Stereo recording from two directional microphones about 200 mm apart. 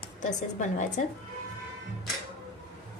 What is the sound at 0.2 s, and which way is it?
Speech, 40° left (ahead or behind).